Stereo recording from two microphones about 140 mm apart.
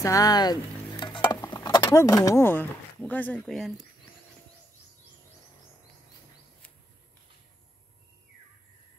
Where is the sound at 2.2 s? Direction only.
15° left (ahead or behind); by 3.8 s centre (ahead or behind).